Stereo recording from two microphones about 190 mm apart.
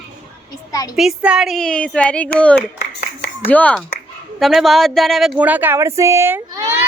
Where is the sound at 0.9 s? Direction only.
5° right (ahead or behind).